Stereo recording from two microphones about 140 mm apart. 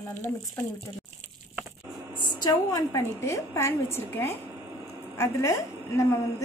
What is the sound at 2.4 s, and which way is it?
A woman's voice, 25° left (ahead or behind).